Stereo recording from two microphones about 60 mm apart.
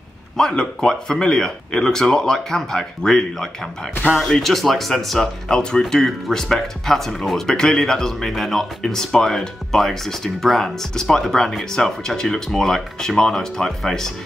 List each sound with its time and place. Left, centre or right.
0.4 s speech: centre